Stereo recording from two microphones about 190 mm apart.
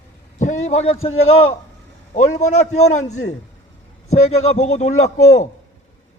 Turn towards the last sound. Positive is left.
turn(degrees=35)  # may be behind; listen again after turning